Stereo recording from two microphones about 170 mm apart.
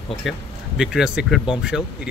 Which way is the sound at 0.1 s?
Centre (ahead or behind).